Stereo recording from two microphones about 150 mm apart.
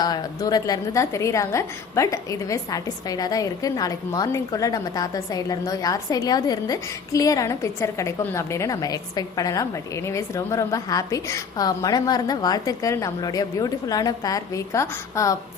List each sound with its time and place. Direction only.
0.0 s a woman's voice: 25° left (ahead or behind)